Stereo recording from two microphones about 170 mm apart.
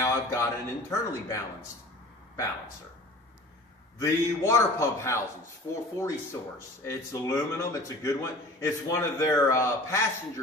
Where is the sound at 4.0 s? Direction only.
20° left (ahead or behind).